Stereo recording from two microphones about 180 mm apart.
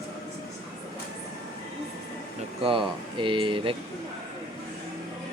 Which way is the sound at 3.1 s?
25° right (ahead or behind).